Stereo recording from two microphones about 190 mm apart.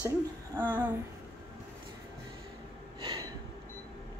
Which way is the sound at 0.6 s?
10° right (ahead or behind).